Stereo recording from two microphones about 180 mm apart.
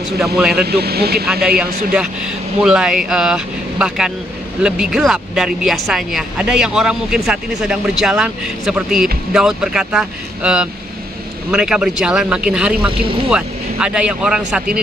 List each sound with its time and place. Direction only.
0.4 s speech: 5° right (ahead or behind)
0.7 s speech: 60° right (ahead or behind)
2.6 s speech: 5° right (ahead or behind)